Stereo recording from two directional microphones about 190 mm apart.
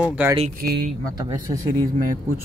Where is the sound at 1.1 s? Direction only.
20° right (ahead or behind).